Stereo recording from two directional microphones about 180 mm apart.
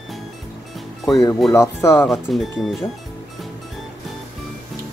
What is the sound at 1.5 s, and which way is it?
Speech, 15° left (ahead or behind).